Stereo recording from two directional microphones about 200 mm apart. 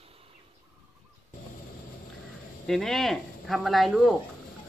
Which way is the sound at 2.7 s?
Centre (ahead or behind).